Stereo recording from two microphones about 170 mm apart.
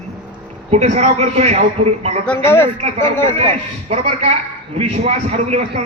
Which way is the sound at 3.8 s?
40° right (ahead or behind).